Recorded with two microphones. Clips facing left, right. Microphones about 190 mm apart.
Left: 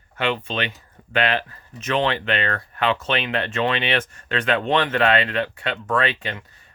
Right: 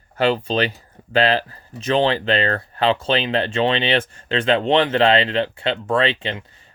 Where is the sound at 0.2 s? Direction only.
35° right (ahead or behind).